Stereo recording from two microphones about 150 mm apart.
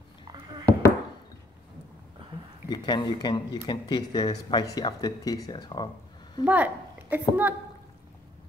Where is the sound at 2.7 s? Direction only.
30° left (ahead or behind).